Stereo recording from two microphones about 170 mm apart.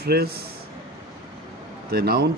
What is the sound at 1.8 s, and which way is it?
Speech, 65° right (ahead or behind).